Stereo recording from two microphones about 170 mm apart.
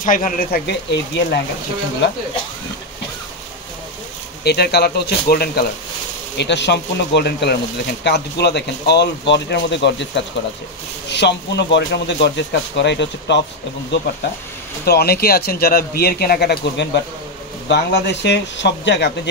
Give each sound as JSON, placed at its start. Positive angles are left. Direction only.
{"t": 0.0, "sound": "speech", "side_deg": 50}
{"t": 0.7, "sound": "speech", "side_deg": 80}
{"t": 4.5, "sound": "speech", "side_deg": 70}
{"t": 6.3, "sound": "speech", "side_deg": 90}
{"t": 9.3, "sound": "speech", "side_deg": 90}
{"t": 14.9, "sound": "speech", "side_deg": 65}